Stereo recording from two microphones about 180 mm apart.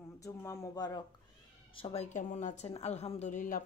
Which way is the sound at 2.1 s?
40° left (ahead or behind).